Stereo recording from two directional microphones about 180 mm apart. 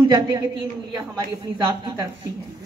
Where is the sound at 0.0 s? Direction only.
20° right (ahead or behind).